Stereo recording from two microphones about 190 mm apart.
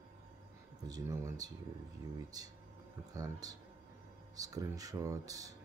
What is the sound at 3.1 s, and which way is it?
Speech, 20° right (ahead or behind).